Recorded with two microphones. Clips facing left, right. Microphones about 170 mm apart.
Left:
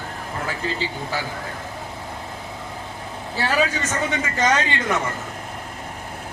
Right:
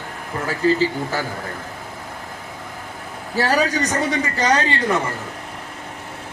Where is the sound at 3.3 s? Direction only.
40° right (ahead or behind).